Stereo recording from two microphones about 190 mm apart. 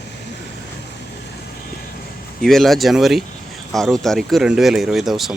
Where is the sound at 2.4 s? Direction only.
Centre (ahead or behind).